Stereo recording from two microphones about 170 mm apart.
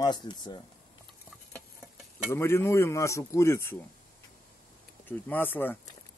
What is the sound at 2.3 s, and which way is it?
Speech, 15° left (ahead or behind).